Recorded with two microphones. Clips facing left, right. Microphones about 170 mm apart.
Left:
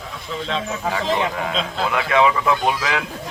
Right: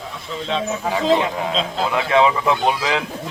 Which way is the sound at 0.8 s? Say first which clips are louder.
Right 4 dB; 15° right (ahead or behind).